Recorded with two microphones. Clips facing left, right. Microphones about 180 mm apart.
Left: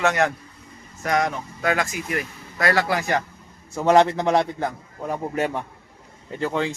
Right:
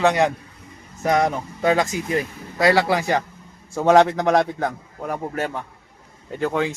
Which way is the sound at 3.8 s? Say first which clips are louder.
Right 2 dB; 5° right (ahead or behind).